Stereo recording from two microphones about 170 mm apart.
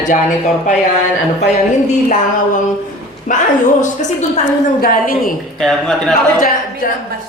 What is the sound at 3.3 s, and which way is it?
Speech, 45° left (ahead or behind).